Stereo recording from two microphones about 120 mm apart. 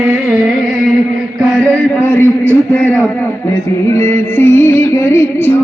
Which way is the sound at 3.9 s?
20° left (ahead or behind).